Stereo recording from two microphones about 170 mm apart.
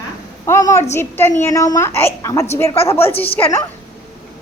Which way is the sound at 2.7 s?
35° left (ahead or behind).